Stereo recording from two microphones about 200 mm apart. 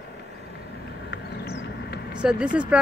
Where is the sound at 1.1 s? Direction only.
55° left (ahead or behind).